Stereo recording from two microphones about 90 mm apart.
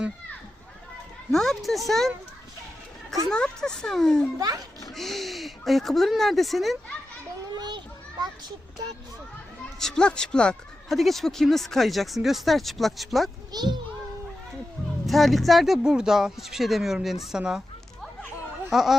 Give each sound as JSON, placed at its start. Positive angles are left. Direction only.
{"t": 1.3, "sound": "speech", "side_deg": 5}
{"t": 3.2, "sound": "speech", "side_deg": 10}
{"t": 4.4, "sound": "a child's voice", "side_deg": -45}
{"t": 4.9, "sound": "speech", "side_deg": 0}
{"t": 9.8, "sound": "speech", "side_deg": 10}
{"t": 13.5, "sound": "a child's voice", "side_deg": -50}
{"t": 15.0, "sound": "speech", "side_deg": 0}
{"t": 18.7, "sound": "speech", "side_deg": -5}